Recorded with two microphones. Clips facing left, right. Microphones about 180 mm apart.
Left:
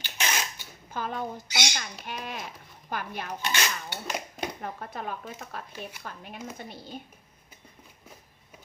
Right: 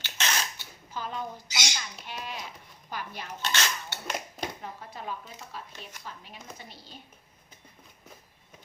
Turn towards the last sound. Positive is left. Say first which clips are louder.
# left 7 dB
turn(degrees=50)  # may be behind; listen again after turning